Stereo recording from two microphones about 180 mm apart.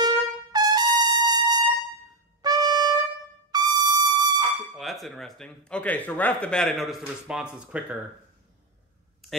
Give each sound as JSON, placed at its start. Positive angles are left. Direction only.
{"t": 0.0, "sound": "trumpet", "side_deg": -20}
{"t": 3.5, "sound": "music", "side_deg": -20}
{"t": 4.7, "sound": "speech", "side_deg": 0}